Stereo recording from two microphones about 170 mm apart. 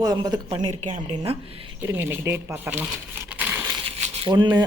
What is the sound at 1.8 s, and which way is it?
Speech, 15° right (ahead or behind).